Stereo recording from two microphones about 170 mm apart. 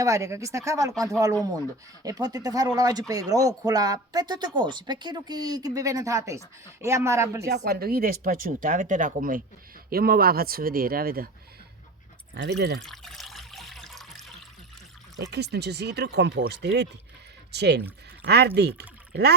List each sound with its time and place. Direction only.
0.0 s speech: 20° right (ahead or behind)
7.4 s speech: 70° right (ahead or behind)
12.3 s speech: 80° right
12.8 s water: centre (ahead or behind)
15.1 s speech: 85° right